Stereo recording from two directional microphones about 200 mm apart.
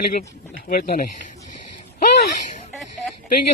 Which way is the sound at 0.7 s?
45° left (ahead or behind).